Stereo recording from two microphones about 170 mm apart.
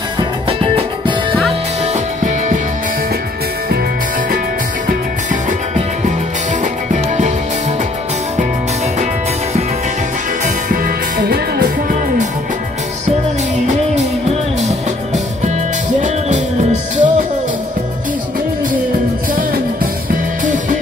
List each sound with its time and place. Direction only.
0.2 s music: 30° right (ahead or behind)
6.6 s music: 45° right (ahead or behind)
10.4 s music: 55° right (ahead or behind)
16.9 s music: 50° right (ahead or behind)